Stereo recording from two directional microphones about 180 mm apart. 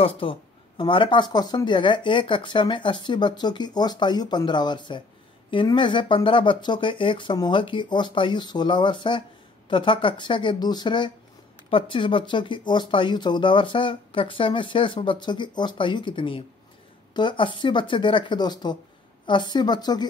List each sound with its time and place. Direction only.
0.0 s speech: 30° left (ahead or behind)